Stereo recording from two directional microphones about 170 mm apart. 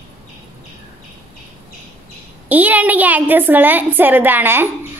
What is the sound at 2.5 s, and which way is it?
A woman's voice, 10° right (ahead or behind).